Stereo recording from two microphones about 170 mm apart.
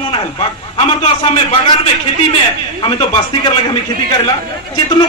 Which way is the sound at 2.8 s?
30° left (ahead or behind).